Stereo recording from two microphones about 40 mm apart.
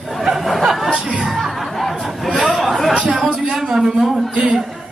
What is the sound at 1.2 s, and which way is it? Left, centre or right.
Speech, centre.